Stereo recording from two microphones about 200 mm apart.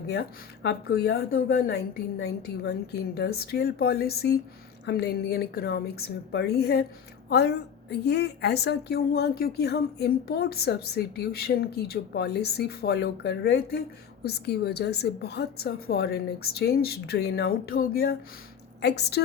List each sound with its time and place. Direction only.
0.1 s a woman's voice: 55° left (ahead or behind)